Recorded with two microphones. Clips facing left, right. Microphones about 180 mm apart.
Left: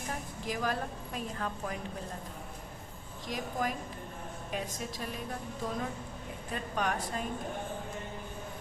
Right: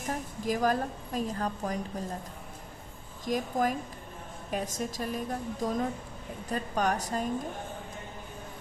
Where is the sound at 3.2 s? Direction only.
45° right (ahead or behind).